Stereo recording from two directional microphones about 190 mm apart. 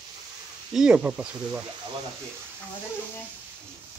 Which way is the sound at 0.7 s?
5° right (ahead or behind).